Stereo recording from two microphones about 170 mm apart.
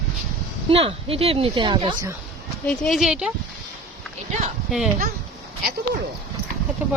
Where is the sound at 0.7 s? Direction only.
35° right (ahead or behind).